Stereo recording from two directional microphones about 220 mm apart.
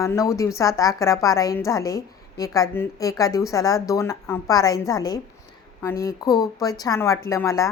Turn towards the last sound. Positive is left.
turn(degrees=15)  # may be behind; listen again after turning